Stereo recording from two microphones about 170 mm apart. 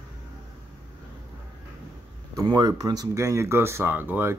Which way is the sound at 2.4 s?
25° right (ahead or behind).